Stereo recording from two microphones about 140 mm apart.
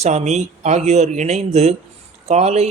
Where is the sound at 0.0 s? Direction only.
55° right (ahead or behind).